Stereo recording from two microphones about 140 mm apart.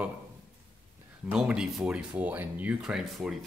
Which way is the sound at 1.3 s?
5° right (ahead or behind).